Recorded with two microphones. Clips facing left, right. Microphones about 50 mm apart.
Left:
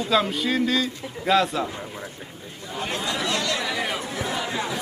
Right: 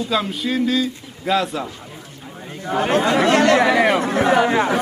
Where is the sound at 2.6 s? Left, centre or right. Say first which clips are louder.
Right 11 dB; right.